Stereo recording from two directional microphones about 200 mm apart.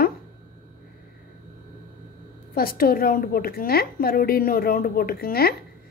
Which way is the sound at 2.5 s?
45° left (ahead or behind).